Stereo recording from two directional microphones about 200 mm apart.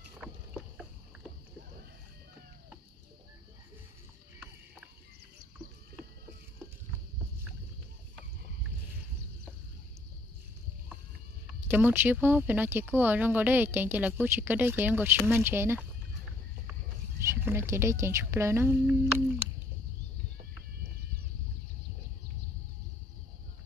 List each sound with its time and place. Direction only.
11.4 s speech: 10° right (ahead or behind)
17.2 s speech: 10° right (ahead or behind)